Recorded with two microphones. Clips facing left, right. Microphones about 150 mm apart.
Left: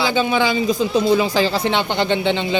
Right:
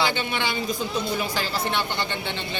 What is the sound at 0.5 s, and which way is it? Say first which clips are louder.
Speech: left 9 dB; 90° left.